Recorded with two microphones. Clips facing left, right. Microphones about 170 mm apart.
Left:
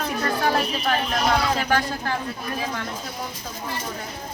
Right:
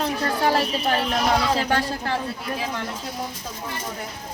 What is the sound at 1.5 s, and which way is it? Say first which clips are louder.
Speech: even; 30° right (ahead or behind).